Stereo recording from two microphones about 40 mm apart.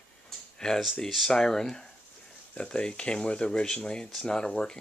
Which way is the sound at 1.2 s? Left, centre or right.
Centre.